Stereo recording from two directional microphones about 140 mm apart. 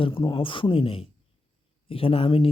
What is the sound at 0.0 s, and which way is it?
Speech, 35° left (ahead or behind).